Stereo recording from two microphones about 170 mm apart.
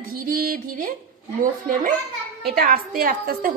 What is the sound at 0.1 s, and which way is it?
Music, 60° right (ahead or behind).